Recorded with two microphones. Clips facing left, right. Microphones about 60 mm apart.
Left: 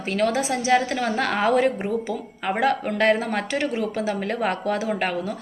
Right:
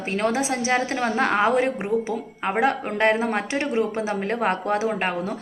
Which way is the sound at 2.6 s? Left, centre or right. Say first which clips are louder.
Even; right.